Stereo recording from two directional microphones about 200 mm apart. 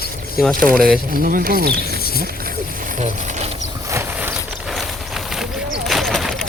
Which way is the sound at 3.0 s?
35° right (ahead or behind).